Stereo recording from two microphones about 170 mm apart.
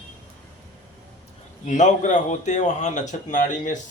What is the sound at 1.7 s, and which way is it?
A man's voice, 45° left (ahead or behind).